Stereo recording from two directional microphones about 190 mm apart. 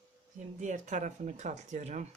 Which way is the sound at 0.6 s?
40° right (ahead or behind).